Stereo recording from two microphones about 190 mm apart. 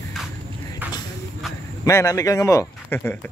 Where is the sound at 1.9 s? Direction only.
15° left (ahead or behind).